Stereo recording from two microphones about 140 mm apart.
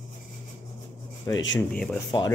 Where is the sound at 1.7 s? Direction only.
5° left (ahead or behind).